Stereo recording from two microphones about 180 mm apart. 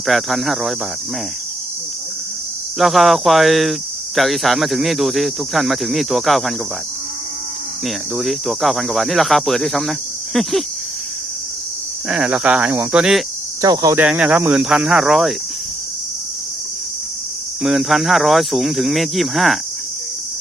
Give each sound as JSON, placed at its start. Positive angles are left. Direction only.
{"t": 0.0, "sound": "cricket", "side_deg": 0}
{"t": 2.7, "sound": "cricket", "side_deg": 0}
{"t": 7.9, "sound": "cricket", "side_deg": 0}
{"t": 12.0, "sound": "cricket", "side_deg": -5}
{"t": 13.6, "sound": "cricket", "side_deg": -20}
{"t": 14.0, "sound": "cricket", "side_deg": -10}
{"t": 17.6, "sound": "cricket", "side_deg": 0}